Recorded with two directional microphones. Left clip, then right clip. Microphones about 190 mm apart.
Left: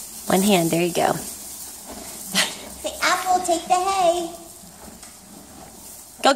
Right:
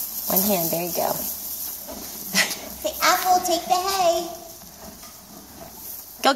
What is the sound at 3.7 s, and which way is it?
Speech, 5° left (ahead or behind).